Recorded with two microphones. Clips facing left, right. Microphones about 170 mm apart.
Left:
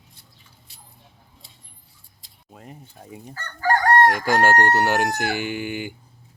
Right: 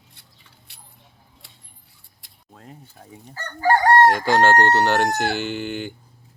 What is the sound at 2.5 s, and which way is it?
Speech, 10° left (ahead or behind).